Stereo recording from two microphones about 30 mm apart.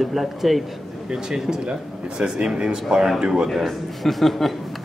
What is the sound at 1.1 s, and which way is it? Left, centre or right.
A woman's voice, right.